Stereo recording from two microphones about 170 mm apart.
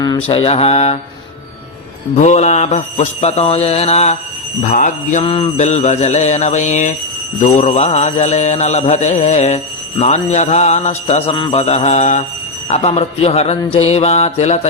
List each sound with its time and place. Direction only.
0.3 s mantra: 35° left (ahead or behind)
2.1 s mantra: 45° left (ahead or behind)
5.2 s mantra: 35° left (ahead or behind)